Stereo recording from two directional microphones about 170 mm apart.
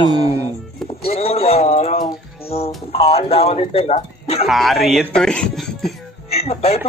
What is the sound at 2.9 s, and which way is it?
Speech, 35° left (ahead or behind).